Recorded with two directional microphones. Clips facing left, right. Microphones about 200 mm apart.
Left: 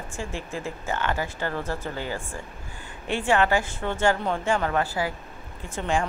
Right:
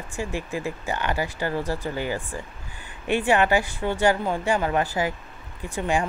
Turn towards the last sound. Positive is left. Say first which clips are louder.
# right 1 dB
turn(degrees=-15)  # may be behind; listen again after turning